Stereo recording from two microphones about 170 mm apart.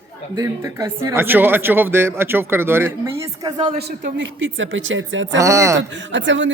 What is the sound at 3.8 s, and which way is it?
Speech, 75° right (ahead or behind).